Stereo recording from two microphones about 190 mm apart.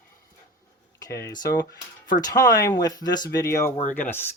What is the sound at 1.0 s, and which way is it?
Speech, 15° left (ahead or behind).